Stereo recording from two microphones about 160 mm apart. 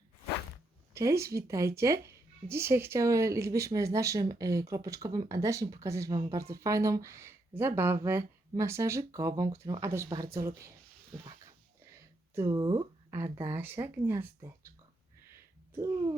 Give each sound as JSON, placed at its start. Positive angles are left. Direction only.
{"t": 0.9, "sound": "a woman's voice", "side_deg": -20}
{"t": 12.3, "sound": "speech", "side_deg": -20}